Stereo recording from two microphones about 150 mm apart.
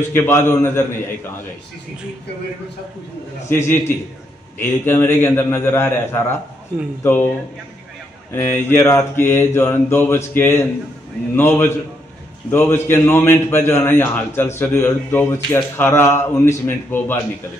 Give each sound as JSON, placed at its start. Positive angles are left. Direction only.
{"t": 0.1, "sound": "a man's voice", "side_deg": 15}
{"t": 3.4, "sound": "a man's voice", "side_deg": 15}
{"t": 8.3, "sound": "a man's voice", "side_deg": 15}